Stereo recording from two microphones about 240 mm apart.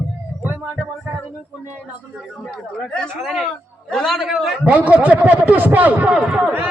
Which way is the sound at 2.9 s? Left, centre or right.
Centre.